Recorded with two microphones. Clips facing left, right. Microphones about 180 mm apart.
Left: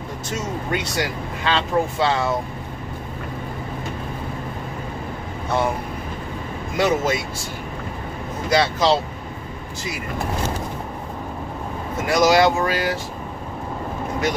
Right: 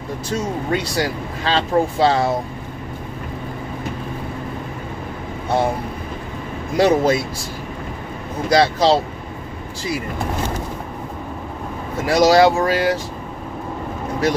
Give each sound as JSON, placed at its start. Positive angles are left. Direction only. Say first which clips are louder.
{"t": 0.3, "sound": "speech", "louder": "right 4 dB", "side_deg": -35}
{"t": 6.8, "sound": "speech", "louder": "right 5 dB", "side_deg": -35}
{"t": 8.5, "sound": "speech", "louder": "right 3 dB", "side_deg": -35}
{"t": 12.1, "sound": "speech", "louder": "right 3 dB", "side_deg": -30}